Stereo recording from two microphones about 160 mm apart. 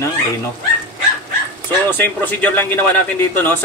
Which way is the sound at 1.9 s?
10° left (ahead or behind).